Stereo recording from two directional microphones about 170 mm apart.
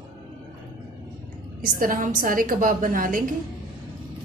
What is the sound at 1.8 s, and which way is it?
A woman's voice, 55° right (ahead or behind).